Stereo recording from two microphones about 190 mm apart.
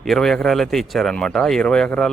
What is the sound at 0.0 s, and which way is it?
Speech, centre (ahead or behind).